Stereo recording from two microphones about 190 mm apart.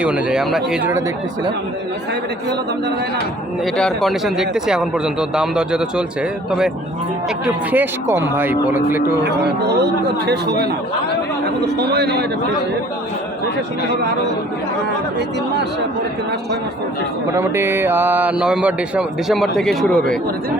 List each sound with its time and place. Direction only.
0.0 s a man's voice: 5° right (ahead or behind)
3.8 s a man's voice: centre (ahead or behind)
7.4 s speech: 10° right (ahead or behind)
9.2 s speech: 60° right (ahead or behind)
17.3 s speech: 15° right (ahead or behind); by 20.0 s centre (ahead or behind)